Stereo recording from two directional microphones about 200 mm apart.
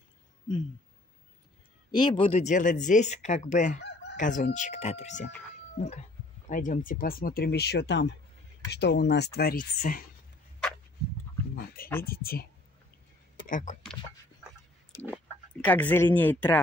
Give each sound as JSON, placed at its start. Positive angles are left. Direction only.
{"t": 1.9, "sound": "speech", "side_deg": 25}
{"t": 11.5, "sound": "speech", "side_deg": 45}
{"t": 13.5, "sound": "speech", "side_deg": 40}
{"t": 15.6, "sound": "speech", "side_deg": 10}